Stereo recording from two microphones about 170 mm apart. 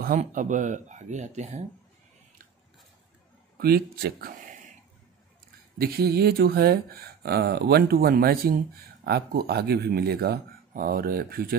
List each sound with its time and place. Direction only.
0.2 s speech: 50° right (ahead or behind)
3.5 s speech: 65° right (ahead or behind)
5.8 s speech: 65° right (ahead or behind)